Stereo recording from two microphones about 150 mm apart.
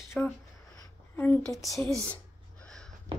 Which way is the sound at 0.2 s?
5° left (ahead or behind).